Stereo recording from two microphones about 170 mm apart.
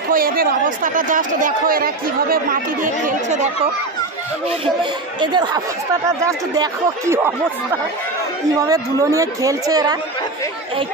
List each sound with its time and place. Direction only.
0.1 s speech: 60° right (ahead or behind)
5.2 s a woman's voice: 25° right (ahead or behind)
8.5 s a woman's voice: 20° right (ahead or behind)